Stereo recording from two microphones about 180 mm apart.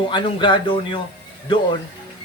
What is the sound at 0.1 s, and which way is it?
Speech, 25° left (ahead or behind).